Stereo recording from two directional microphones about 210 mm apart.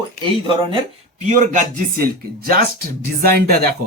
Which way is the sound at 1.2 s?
35° right (ahead or behind).